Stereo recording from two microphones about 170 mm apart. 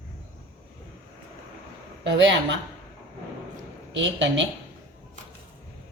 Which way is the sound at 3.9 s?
90° right.